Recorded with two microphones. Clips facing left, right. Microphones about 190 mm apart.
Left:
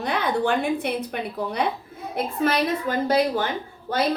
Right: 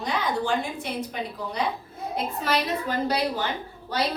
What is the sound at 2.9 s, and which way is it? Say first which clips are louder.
A woman's voice: left 5 dB; 50° left (ahead or behind).